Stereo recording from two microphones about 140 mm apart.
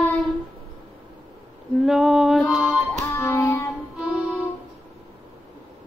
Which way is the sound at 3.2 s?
15° left (ahead or behind).